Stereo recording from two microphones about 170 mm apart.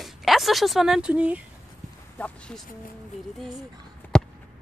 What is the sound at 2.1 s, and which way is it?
Speech, 10° left (ahead or behind).